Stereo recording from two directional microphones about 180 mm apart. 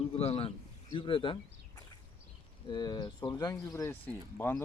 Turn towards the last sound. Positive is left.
turn(degrees=10)  # may be behind; listen again after turning